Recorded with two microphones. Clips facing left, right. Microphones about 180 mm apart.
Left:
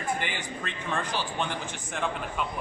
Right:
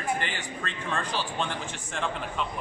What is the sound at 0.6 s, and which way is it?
Speech, 15° left (ahead or behind).